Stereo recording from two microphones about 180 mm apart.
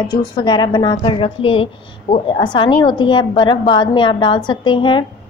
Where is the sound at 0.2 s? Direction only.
25° left (ahead or behind).